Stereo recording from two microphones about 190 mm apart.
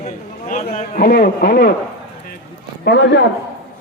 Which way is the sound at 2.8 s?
70° left (ahead or behind).